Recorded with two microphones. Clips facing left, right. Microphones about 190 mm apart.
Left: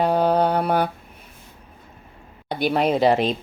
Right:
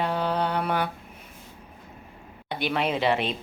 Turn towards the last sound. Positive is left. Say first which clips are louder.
# left 6 dB
turn(degrees=40)  # may be behind; listen again after turning